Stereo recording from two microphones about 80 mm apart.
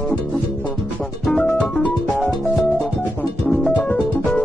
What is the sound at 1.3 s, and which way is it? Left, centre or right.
Music, centre.